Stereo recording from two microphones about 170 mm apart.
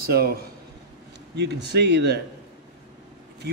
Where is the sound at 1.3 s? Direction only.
75° right (ahead or behind).